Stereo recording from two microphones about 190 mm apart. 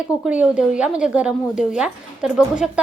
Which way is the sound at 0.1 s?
5° right (ahead or behind).